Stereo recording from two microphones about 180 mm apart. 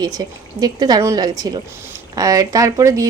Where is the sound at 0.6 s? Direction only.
25° right (ahead or behind).